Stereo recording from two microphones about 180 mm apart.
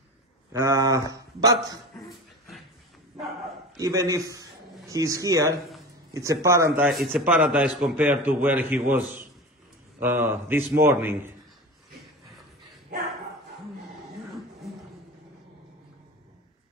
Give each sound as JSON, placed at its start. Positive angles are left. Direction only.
{"t": 0.5, "sound": "speech", "side_deg": -20}
{"t": 3.7, "sound": "a man's voice", "side_deg": -20}
{"t": 9.9, "sound": "speech", "side_deg": -10}